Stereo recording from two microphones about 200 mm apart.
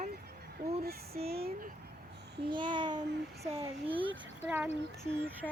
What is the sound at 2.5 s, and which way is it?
A child's voice, 25° right (ahead or behind).